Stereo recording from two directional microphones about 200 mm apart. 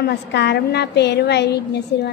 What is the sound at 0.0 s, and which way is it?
A woman's voice, 55° left (ahead or behind).